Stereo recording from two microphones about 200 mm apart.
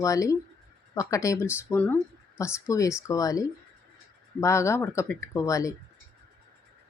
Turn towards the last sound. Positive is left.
turn(degrees=15)  # may be behind; listen again after turning